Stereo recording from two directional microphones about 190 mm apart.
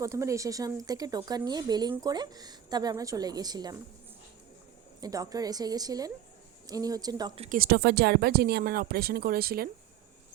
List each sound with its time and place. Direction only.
0.0 s speech: 15° right (ahead or behind)
4.9 s speech: 20° right (ahead or behind)
7.5 s speech: 50° right (ahead or behind)